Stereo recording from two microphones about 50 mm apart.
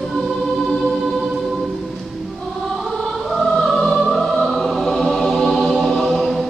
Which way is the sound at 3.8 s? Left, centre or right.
Centre.